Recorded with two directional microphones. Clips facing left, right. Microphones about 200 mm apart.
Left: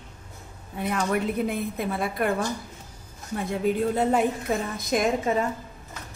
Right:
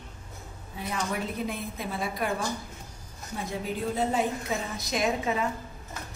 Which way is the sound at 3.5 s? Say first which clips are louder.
Left 8 dB; 60° left (ahead or behind).